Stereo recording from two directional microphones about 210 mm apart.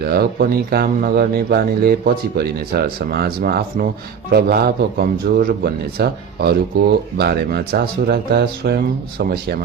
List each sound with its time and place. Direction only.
0.0 s a man's voice: 45° right (ahead or behind)